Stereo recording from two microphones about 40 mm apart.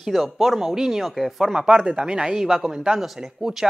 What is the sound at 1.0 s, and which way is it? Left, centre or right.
Speech, centre.